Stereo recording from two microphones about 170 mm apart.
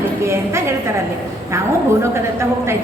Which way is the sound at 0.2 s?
15° right (ahead or behind).